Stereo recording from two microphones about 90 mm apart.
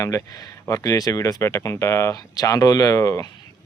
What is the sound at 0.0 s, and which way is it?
Speech, 40° left (ahead or behind).